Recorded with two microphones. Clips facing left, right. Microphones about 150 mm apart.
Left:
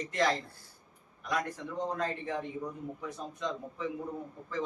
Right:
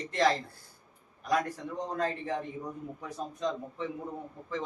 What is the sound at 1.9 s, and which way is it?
Speech, 35° right (ahead or behind).